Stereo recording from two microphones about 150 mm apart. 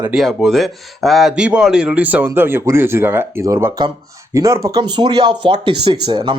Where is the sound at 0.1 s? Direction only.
5° right (ahead or behind).